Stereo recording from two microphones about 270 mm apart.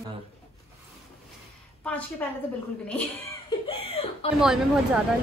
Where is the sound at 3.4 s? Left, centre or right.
Centre.